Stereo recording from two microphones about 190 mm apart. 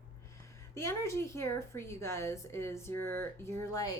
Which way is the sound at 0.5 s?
15° left (ahead or behind).